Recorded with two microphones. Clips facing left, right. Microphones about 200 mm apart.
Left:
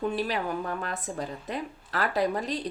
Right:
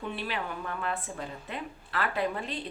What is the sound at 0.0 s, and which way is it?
Speech, 40° left (ahead or behind).